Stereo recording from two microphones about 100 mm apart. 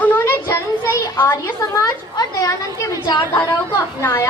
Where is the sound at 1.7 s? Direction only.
35° left (ahead or behind).